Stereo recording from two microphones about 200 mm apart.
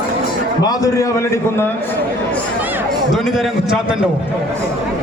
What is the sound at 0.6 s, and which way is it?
A man's voice, 20° left (ahead or behind).